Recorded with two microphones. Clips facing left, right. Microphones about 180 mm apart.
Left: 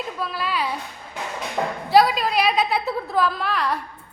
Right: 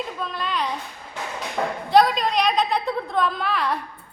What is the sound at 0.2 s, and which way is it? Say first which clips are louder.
Speech: left 3 dB; 5° left (ahead or behind).